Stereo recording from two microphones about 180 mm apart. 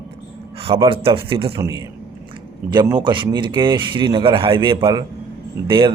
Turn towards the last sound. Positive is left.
turn(degrees=-25)  # may be behind; listen again after turning